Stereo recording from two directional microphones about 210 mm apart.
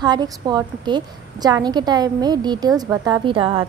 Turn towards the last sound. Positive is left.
turn(degrees=-25)  # may be behind; listen again after turning